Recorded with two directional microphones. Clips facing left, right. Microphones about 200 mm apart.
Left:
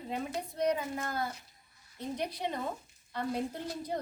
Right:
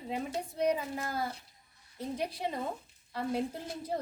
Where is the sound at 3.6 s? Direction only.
25° right (ahead or behind).